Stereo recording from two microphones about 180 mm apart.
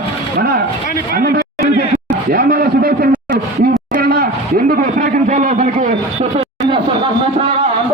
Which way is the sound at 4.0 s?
55° right (ahead or behind).